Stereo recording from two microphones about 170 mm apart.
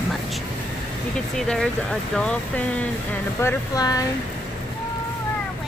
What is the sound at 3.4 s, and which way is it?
Speech, 20° left (ahead or behind).